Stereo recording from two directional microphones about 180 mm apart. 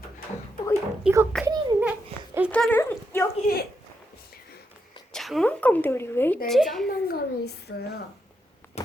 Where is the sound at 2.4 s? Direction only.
10° left (ahead or behind).